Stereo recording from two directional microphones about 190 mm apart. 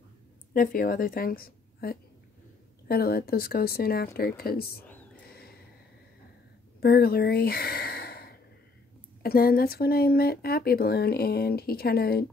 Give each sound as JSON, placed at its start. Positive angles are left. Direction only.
{"t": 0.5, "sound": "a woman's voice", "side_deg": 50}
{"t": 4.8, "sound": "whispering", "side_deg": 10}
{"t": 6.8, "sound": "speech", "side_deg": 55}